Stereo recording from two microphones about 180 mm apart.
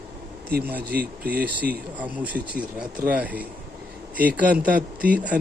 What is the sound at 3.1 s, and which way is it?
A man's voice, 10° right (ahead or behind).